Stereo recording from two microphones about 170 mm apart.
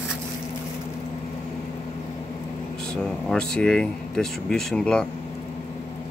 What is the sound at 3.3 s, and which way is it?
Speech, 5° left (ahead or behind).